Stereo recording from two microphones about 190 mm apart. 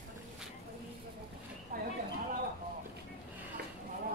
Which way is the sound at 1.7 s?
45° right (ahead or behind).